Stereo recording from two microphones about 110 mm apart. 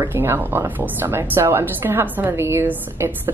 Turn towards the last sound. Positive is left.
turn(degrees=-20)  # may be behind; listen again after turning